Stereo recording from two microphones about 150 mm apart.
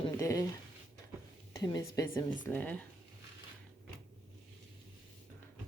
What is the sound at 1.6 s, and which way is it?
Speech, 25° left (ahead or behind).